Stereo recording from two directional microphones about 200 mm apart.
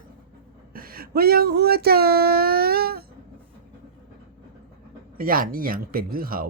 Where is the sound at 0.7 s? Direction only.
45° right (ahead or behind).